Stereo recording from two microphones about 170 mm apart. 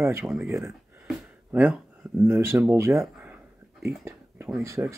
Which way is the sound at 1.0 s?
5° right (ahead or behind).